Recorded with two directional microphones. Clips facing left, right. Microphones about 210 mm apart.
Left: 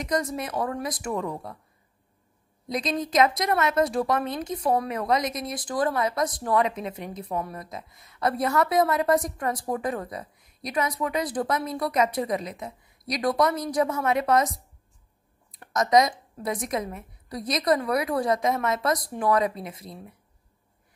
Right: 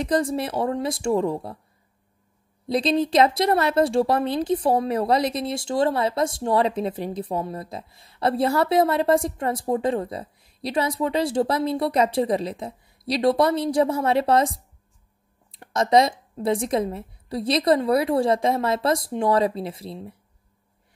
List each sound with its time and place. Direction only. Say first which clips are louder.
0.0 s speech: right 5 dB; 30° right (ahead or behind)
2.7 s speech: right 6 dB; 30° right (ahead or behind)